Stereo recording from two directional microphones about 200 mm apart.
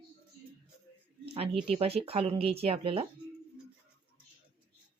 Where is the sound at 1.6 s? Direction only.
30° right (ahead or behind).